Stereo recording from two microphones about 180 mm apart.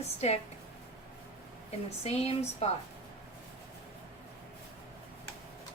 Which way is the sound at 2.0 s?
35° left (ahead or behind).